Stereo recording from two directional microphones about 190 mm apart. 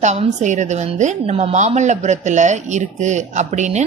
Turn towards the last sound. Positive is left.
turn(degrees=-35)  # may be behind; listen again after turning